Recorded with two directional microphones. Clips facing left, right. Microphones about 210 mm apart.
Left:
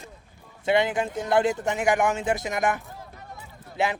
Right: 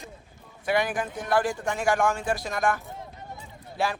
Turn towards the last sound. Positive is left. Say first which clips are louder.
# left 2 dB
turn(degrees=20)  # may be behind; listen again after turning